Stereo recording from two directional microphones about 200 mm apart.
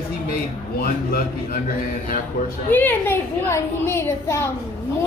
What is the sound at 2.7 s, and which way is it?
A woman's voice, 10° left (ahead or behind).